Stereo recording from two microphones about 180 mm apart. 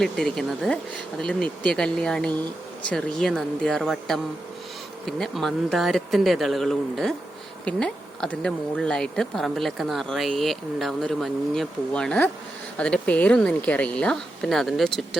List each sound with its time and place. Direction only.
0.0 s speech: centre (ahead or behind)